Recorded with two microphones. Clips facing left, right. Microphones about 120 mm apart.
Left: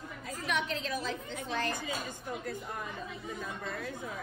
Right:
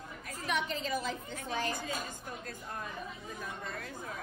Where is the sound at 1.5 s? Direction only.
15° right (ahead or behind).